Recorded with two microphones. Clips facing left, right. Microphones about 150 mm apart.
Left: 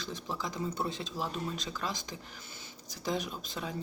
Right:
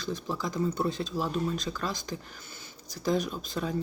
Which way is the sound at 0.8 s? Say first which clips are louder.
Right 6 dB; 50° right (ahead or behind).